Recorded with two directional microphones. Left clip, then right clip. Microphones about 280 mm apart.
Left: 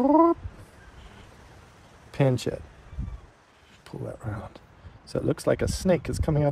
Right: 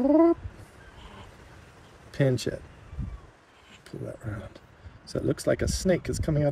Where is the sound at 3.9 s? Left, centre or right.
Left.